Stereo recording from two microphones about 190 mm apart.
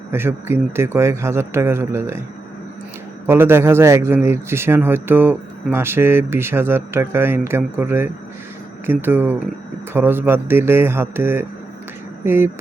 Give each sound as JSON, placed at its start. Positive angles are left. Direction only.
{"t": 0.1, "sound": "a man's voice", "side_deg": -10}
{"t": 3.2, "sound": "a man's voice", "side_deg": -10}